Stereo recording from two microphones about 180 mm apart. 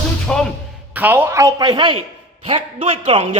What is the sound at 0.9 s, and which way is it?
A man's voice, 10° right (ahead or behind).